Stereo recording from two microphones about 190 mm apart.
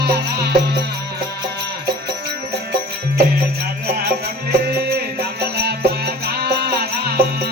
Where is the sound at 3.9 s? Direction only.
55° right (ahead or behind).